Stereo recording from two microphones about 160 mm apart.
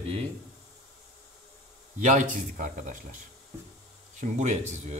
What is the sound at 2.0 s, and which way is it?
Speech, 50° right (ahead or behind).